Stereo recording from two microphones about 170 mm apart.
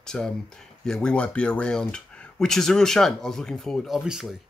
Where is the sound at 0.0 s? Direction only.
5° left (ahead or behind).